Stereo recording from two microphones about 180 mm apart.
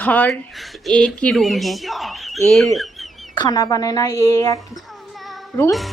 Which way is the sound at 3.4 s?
20° left (ahead or behind).